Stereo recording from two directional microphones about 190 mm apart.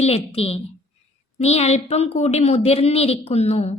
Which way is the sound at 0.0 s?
35° left (ahead or behind).